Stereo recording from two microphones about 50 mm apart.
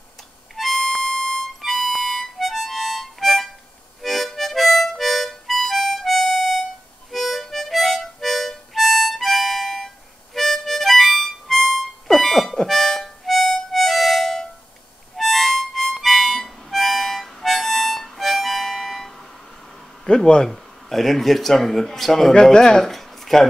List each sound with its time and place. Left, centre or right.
0.6 s harmonica: centre
20.1 s speech: centre
20.4 s speech: centre